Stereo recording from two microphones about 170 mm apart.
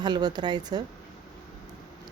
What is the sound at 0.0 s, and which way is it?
Speech, 25° right (ahead or behind).